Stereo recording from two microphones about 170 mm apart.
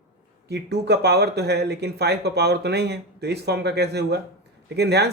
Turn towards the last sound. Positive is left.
turn(degrees=-75)  # may be behind; listen again after turning